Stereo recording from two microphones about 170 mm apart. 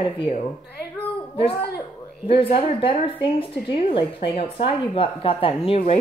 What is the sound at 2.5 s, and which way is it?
Speech, 30° left (ahead or behind).